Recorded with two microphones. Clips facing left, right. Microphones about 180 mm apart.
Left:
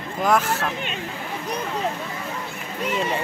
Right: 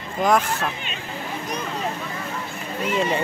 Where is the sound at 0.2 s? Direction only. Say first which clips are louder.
Right 1 dB; 5° left (ahead or behind).